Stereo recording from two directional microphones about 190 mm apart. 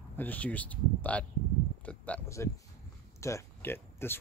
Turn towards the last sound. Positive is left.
turn(degrees=10)  # may be behind; listen again after turning